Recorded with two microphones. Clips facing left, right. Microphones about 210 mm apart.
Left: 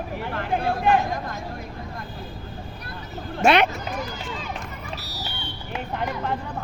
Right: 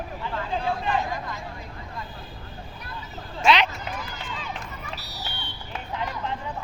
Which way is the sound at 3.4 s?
55° left (ahead or behind).